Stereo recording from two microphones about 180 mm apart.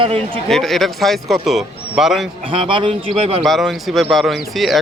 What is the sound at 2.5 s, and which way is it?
Speech, 30° right (ahead or behind).